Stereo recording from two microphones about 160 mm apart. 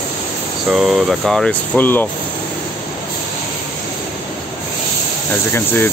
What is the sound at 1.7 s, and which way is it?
Speech, 10° left (ahead or behind).